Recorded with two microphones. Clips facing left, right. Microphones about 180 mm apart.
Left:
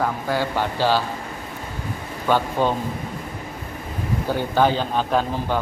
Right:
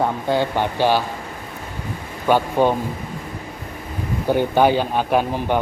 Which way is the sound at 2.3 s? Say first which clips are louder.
Right 3 dB; 15° right (ahead or behind).